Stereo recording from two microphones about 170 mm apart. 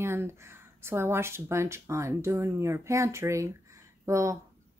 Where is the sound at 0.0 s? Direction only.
15° right (ahead or behind).